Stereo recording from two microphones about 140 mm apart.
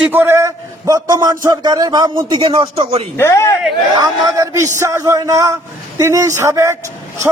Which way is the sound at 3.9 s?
25° right (ahead or behind).